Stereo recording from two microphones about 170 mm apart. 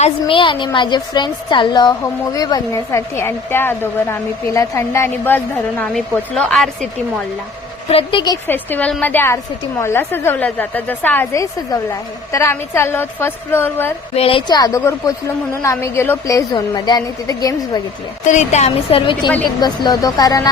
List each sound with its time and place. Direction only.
0.0 s a woman's voice: 30° left (ahead or behind); by 6.7 s 5° left (ahead or behind)
7.9 s a woman's voice: 30° left (ahead or behind)
8.4 s a woman's voice: 10° left (ahead or behind)
14.2 s a woman's voice: 30° left (ahead or behind)
18.3 s a woman's voice: 45° left (ahead or behind); by 20.5 s 20° left (ahead or behind)